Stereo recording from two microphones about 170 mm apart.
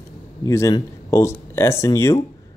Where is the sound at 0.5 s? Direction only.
20° left (ahead or behind).